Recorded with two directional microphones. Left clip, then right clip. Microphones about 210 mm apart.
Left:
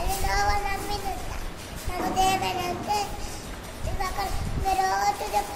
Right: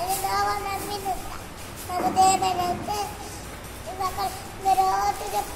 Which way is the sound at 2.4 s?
15° left (ahead or behind).